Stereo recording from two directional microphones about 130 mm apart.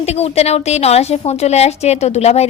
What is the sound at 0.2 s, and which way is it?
A woman's voice, 55° left (ahead or behind).